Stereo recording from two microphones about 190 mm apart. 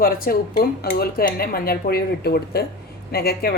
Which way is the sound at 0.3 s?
50° left (ahead or behind).